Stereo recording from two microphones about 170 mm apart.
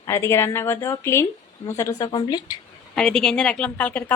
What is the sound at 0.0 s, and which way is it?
Speech, 15° left (ahead or behind).